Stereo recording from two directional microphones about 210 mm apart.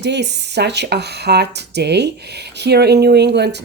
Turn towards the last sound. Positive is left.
turn(degrees=-55)  # may be behind; listen again after turning